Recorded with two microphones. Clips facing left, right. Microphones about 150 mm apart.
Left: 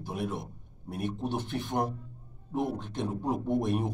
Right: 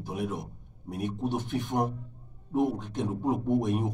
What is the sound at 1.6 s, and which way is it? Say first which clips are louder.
Speech: right 2 dB; centre (ahead or behind).